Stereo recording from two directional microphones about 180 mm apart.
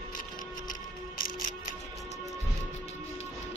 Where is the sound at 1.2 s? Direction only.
40° left (ahead or behind).